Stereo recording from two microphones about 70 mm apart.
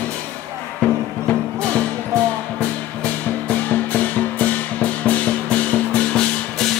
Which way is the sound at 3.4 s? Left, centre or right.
Left.